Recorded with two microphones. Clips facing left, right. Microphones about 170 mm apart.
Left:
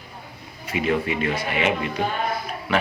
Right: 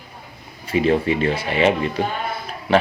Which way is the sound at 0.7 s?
30° right (ahead or behind).